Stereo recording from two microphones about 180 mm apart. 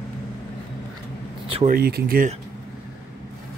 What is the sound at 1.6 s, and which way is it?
Speech, 55° right (ahead or behind).